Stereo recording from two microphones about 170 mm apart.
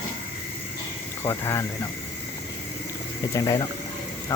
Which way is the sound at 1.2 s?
15° left (ahead or behind).